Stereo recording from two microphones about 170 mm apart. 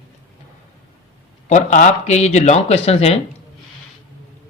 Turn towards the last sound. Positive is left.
turn(degrees=35)  # may be behind; listen again after turning